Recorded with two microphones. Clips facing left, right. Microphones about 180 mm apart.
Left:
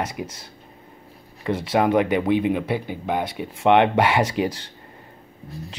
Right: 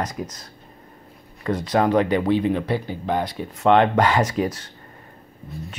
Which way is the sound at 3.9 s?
10° left (ahead or behind).